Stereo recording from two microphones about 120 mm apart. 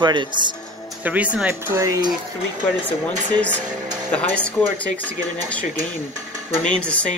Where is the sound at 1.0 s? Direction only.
10° right (ahead or behind).